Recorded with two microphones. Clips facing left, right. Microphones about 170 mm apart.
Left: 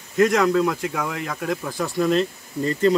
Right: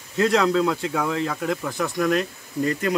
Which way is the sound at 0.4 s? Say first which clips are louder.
Left 1 dB; 10° left (ahead or behind).